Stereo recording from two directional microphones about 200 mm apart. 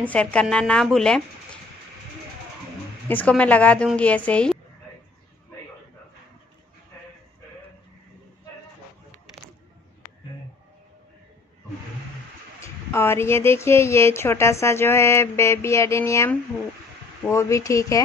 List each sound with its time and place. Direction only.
0.0 s speech: 5° left (ahead or behind)
3.1 s speech: 5° left (ahead or behind)
12.6 s speech: 10° left (ahead or behind)